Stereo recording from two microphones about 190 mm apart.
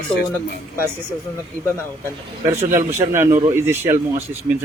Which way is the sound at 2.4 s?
15° right (ahead or behind).